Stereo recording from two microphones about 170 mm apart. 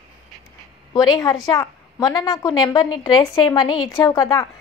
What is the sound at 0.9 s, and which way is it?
A woman's voice, 20° left (ahead or behind).